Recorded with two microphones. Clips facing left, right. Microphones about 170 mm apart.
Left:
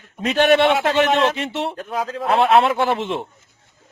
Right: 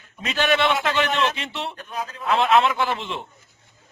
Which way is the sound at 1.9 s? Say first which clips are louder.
Left 7 dB; 90° left.